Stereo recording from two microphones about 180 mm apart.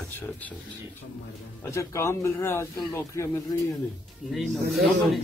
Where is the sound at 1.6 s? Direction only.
15° left (ahead or behind).